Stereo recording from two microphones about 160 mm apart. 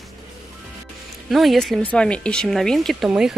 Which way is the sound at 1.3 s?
Centre (ahead or behind).